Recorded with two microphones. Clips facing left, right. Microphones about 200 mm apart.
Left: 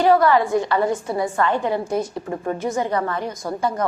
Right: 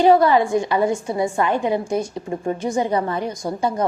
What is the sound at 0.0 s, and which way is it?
A woman's voice, 20° right (ahead or behind).